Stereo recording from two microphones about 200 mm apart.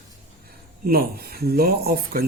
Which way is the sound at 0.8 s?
50° right (ahead or behind).